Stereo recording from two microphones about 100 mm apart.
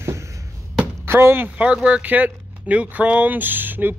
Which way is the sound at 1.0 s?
25° right (ahead or behind).